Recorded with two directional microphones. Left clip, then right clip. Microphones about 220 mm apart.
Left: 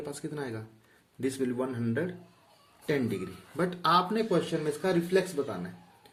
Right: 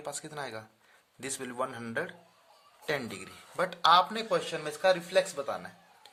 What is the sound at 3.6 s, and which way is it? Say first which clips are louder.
Speech: right 2 dB; 30° right (ahead or behind).